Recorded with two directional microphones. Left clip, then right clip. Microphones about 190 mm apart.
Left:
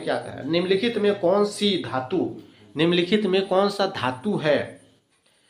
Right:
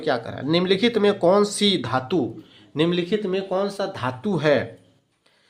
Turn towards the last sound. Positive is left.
turn(degrees=-35)  # may be behind; listen again after turning